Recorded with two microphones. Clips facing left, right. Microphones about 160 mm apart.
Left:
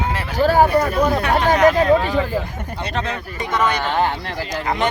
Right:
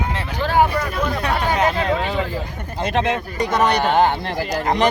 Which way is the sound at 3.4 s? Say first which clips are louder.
Right 2 dB; 35° right (ahead or behind).